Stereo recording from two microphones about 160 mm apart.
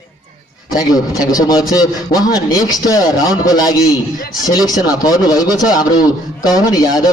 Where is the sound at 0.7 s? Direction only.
25° left (ahead or behind).